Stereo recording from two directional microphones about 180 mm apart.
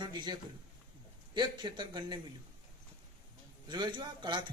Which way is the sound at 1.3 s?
25° right (ahead or behind).